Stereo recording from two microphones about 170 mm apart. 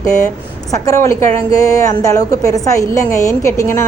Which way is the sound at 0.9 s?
20° left (ahead or behind).